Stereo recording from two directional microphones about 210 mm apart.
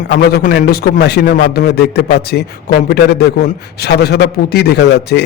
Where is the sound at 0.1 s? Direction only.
45° left (ahead or behind).